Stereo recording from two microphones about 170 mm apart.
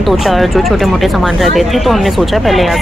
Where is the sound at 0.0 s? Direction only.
Centre (ahead or behind).